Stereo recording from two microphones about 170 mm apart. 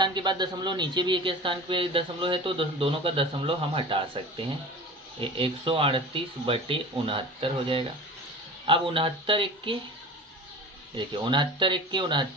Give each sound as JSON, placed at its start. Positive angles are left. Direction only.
{"t": 0.0, "sound": "a man's voice", "side_deg": -25}
{"t": 5.2, "sound": "speech", "side_deg": -30}
{"t": 10.9, "sound": "a man's voice", "side_deg": -30}